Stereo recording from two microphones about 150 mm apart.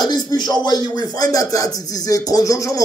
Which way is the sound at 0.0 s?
25° left (ahead or behind).